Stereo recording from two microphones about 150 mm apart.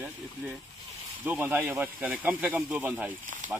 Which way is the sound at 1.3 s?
15° right (ahead or behind).